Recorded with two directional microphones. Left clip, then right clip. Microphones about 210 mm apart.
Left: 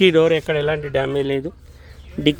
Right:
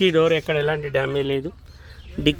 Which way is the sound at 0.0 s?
10° left (ahead or behind).